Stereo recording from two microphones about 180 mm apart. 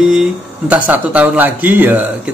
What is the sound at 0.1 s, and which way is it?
Speech, 5° right (ahead or behind).